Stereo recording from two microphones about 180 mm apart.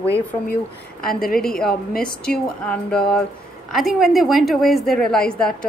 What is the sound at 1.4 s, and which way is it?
A woman's voice, 5° left (ahead or behind).